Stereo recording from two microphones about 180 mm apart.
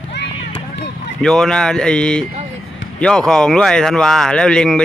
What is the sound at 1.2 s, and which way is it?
Speech, 5° left (ahead or behind).